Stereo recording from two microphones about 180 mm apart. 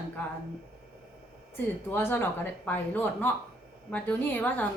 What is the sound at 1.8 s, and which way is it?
A woman's voice, 10° left (ahead or behind).